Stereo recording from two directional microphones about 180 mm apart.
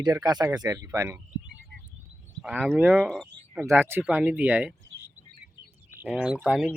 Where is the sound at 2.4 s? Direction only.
10° right (ahead or behind).